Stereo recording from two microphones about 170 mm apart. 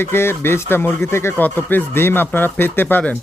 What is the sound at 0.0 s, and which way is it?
Speech, 15° left (ahead or behind).